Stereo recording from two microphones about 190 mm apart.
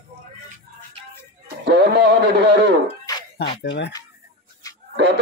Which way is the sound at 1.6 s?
60° right (ahead or behind).